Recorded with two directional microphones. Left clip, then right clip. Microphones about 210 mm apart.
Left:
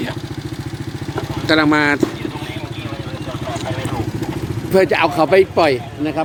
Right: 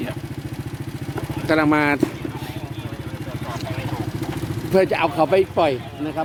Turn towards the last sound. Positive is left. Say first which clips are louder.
# left 6 dB
turn(degrees=5)  # may be behind; listen again after turning